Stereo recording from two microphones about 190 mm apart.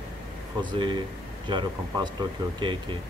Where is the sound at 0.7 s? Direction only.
25° right (ahead or behind).